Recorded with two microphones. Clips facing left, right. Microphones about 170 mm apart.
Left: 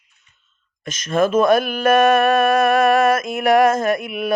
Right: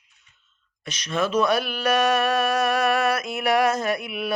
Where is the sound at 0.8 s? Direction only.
45° left (ahead or behind).